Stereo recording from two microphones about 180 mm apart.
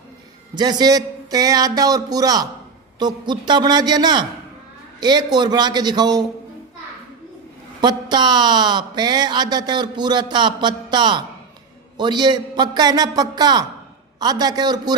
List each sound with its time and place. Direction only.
0.5 s speech: 25° right (ahead or behind)
7.8 s speech: 25° right (ahead or behind)